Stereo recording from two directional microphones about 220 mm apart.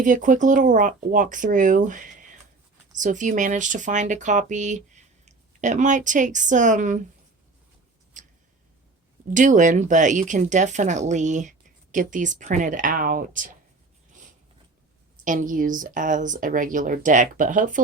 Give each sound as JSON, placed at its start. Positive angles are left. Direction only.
{"t": 0.0, "sound": "a woman's voice", "side_deg": -35}
{"t": 9.3, "sound": "speech", "side_deg": -35}
{"t": 15.2, "sound": "speech", "side_deg": -35}